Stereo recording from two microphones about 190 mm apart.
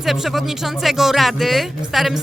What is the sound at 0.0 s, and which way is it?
Speech, centre (ahead or behind).